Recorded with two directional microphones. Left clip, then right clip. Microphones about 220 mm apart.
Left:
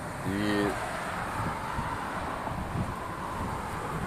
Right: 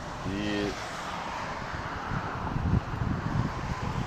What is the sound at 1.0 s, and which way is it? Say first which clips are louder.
Vehicle: left 1 dB; 40° left (ahead or behind).